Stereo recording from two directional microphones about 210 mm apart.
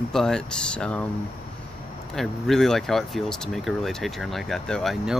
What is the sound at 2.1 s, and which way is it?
Speech, centre (ahead or behind).